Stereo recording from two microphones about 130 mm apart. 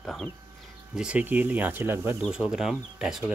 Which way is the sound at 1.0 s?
10° right (ahead or behind).